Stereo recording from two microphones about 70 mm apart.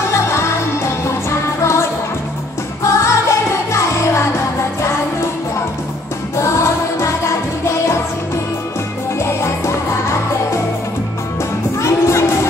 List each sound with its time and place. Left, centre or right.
0.1 s music: left
6.3 s music: left
9.2 s music: left
11.8 s music: left